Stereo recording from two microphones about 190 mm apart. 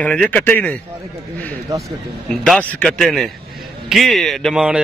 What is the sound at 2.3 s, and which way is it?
A man's voice, 5° left (ahead or behind).